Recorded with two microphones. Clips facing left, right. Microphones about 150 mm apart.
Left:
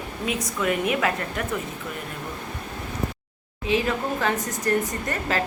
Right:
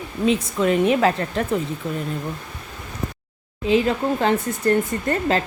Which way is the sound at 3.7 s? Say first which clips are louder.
Right 5 dB; 30° right (ahead or behind).